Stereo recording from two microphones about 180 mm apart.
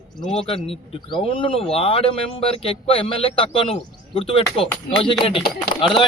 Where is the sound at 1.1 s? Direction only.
30° left (ahead or behind).